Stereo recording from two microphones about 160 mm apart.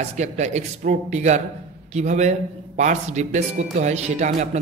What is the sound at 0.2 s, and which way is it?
Speech, 45° right (ahead or behind).